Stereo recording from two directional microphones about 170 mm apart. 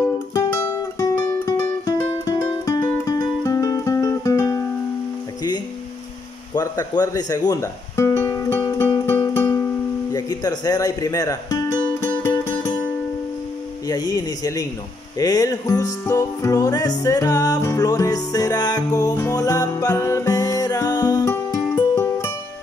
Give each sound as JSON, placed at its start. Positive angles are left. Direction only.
{"t": 0.3, "sound": "music", "side_deg": 15}
{"t": 6.5, "sound": "music", "side_deg": 25}
{"t": 10.1, "sound": "speech", "side_deg": 20}
{"t": 13.8, "sound": "music", "side_deg": 20}